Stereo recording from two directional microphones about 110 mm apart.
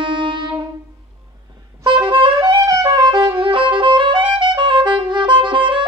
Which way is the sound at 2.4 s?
30° right (ahead or behind).